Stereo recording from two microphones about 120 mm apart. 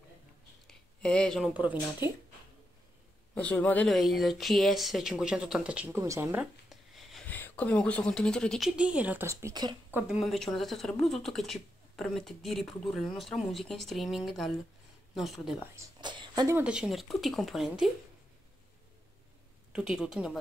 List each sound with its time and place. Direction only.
0.7 s a sound: 5° left (ahead or behind)
1.4 s speech: 10° right (ahead or behind)
3.3 s a man's voice: 10° left (ahead or behind)
3.9 s a woman's voice: centre (ahead or behind)
5.9 s speech: 25° right (ahead or behind)
6.7 s a sound: centre (ahead or behind)
7.2 s speech: 15° left (ahead or behind)
8.6 s speech: 10° right (ahead or behind)
9.5 s speech: 35° right (ahead or behind)
9.8 s speech: 15° right (ahead or behind)
10.2 s a woman's voice: centre (ahead or behind)
16.0 s a sound: 40° right (ahead or behind)
16.6 s a woman's voice: 5° right (ahead or behind)
19.7 s a woman's voice: 5° right (ahead or behind)